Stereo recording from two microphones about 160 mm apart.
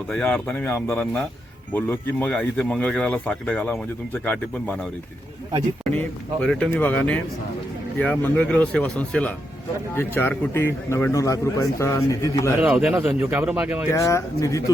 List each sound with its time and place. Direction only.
0.1 s speech: 5° left (ahead or behind)
12.5 s speech: 10° right (ahead or behind)
13.9 s speech: 20° left (ahead or behind)